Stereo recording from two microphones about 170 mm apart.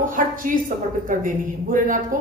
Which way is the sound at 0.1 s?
55° right (ahead or behind).